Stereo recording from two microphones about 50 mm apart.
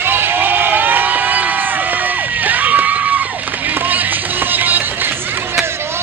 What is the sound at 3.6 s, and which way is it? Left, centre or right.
Music, right.